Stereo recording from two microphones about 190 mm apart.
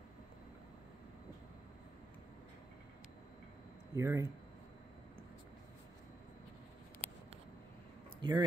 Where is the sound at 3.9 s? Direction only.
15° right (ahead or behind).